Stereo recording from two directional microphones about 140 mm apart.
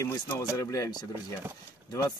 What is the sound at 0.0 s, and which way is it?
Speech, 20° left (ahead or behind).